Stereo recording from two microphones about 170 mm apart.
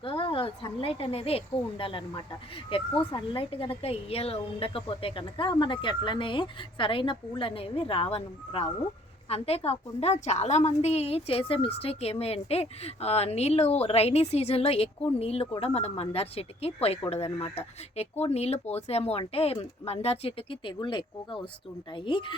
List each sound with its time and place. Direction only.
0.0 s a woman's voice: 30° left (ahead or behind)